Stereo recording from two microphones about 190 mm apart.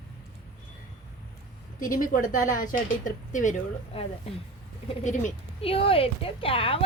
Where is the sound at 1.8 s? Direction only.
45° left (ahead or behind).